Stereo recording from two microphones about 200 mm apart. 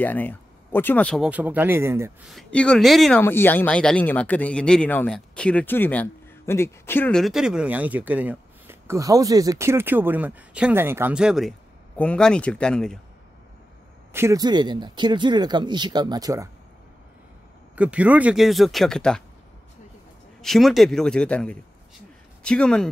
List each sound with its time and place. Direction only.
0.0 s speech: 10° left (ahead or behind); by 2.1 s 15° right (ahead or behind)
2.2 s speech: 5° left (ahead or behind)
14.1 s speech: 15° right (ahead or behind)
17.7 s speech: 5° right (ahead or behind)
20.4 s speech: centre (ahead or behind)